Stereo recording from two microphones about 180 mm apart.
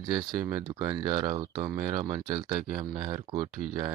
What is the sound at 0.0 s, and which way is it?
Speech, 25° right (ahead or behind).